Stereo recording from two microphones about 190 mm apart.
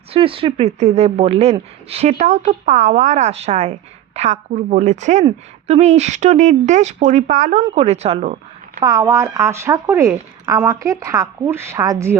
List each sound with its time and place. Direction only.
0.1 s a woman's voice: 30° right (ahead or behind)
8.8 s a woman's voice: 20° right (ahead or behind)